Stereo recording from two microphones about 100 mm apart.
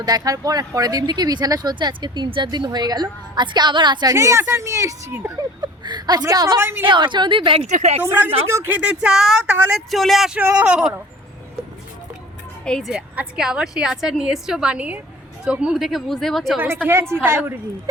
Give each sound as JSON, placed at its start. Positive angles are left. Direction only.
{"t": 0.0, "sound": "speech", "side_deg": -40}
{"t": 4.1, "sound": "a woman's voice", "side_deg": -30}
{"t": 5.6, "sound": "a woman's voice", "side_deg": -45}
{"t": 6.6, "sound": "a woman's voice", "side_deg": -20}
{"t": 6.8, "sound": "speech", "side_deg": -50}
{"t": 8.0, "sound": "a woman's voice", "side_deg": -20}
{"t": 8.8, "sound": "a woman's voice", "side_deg": -10}
{"t": 12.6, "sound": "a woman's voice", "side_deg": 5}
{"t": 12.9, "sound": "a woman's voice", "side_deg": -10}
{"t": 16.8, "sound": "a woman's voice", "side_deg": -25}